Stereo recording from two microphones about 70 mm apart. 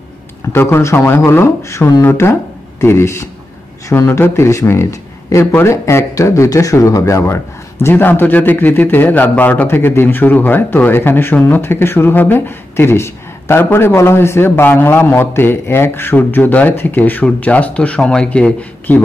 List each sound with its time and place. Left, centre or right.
0.5 s speech: left
2.0 s speech: left
5.4 s speech: left
5.7 s speech: left
7.9 s a man's voice: left
9.7 s speech: left; by 18.7 s centre